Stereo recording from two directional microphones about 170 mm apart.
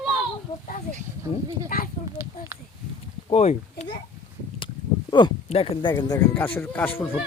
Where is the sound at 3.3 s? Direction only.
40° left (ahead or behind).